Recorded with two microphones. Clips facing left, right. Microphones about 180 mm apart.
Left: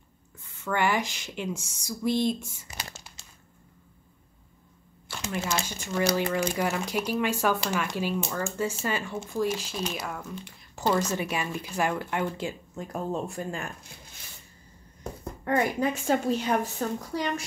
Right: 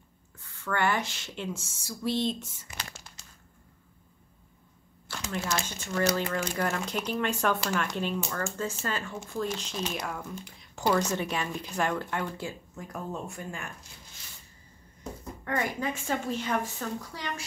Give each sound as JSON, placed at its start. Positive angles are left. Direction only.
{"t": 0.4, "sound": "speech", "side_deg": 15}
{"t": 5.1, "sound": "speech", "side_deg": 10}
{"t": 12.8, "sound": "a woman's voice", "side_deg": 30}
{"t": 15.4, "sound": "a woman's voice", "side_deg": 35}